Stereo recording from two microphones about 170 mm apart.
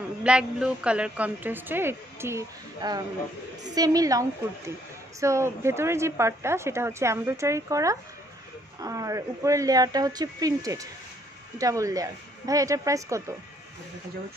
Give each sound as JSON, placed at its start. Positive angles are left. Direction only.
{"t": 0.2, "sound": "a woman's voice", "side_deg": -5}